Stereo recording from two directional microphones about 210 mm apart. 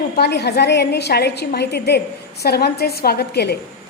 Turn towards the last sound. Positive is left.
turn(degrees=50)  # may be behind; listen again after turning